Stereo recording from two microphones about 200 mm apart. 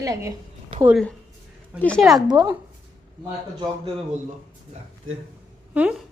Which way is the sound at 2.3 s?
20° right (ahead or behind).